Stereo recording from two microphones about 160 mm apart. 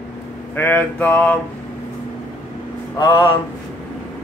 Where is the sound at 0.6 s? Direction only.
10° left (ahead or behind).